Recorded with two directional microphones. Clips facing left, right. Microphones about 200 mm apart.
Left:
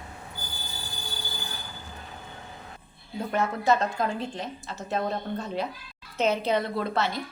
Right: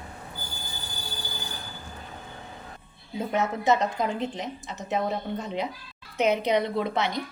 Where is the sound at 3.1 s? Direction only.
20° right (ahead or behind).